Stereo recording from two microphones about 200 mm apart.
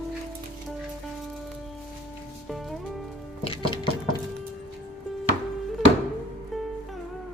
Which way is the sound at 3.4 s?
25° left (ahead or behind).